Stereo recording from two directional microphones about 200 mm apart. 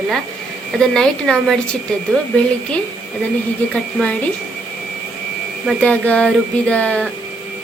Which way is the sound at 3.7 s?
5° left (ahead or behind).